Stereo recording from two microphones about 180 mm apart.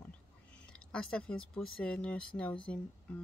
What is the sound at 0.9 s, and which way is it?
Speech, 5° left (ahead or behind).